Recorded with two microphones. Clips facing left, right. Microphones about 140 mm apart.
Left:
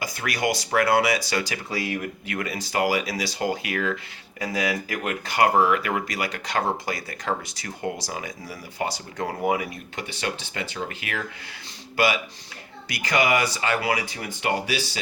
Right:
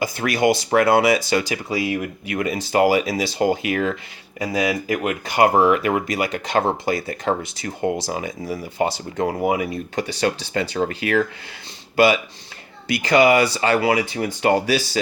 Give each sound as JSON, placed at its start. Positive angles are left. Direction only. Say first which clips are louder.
{"t": 0.0, "sound": "speech", "louder": "right 7 dB", "side_deg": -25}
{"t": 9.6, "sound": "speech", "louder": "right 8 dB", "side_deg": -35}
{"t": 14.5, "sound": "speech", "louder": "right 6 dB", "side_deg": -40}